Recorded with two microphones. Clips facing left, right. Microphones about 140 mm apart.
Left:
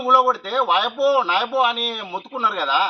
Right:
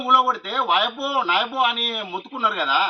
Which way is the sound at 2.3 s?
35° left (ahead or behind).